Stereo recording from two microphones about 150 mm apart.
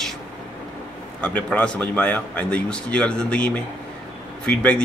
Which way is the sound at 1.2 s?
10° left (ahead or behind).